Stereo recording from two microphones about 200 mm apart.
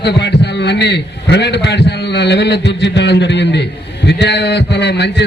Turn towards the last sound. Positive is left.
turn(degrees=60)  # may be behind; listen again after turning